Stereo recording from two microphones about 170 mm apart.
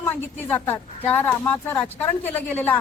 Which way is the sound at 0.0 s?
15° left (ahead or behind).